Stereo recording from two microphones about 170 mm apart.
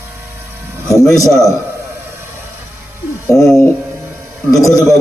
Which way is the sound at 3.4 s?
Centre (ahead or behind).